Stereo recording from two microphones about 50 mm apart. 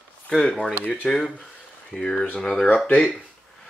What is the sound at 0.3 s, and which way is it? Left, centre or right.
Speech, centre.